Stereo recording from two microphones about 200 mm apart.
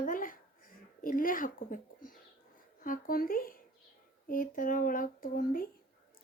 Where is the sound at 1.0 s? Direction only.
45° left (ahead or behind).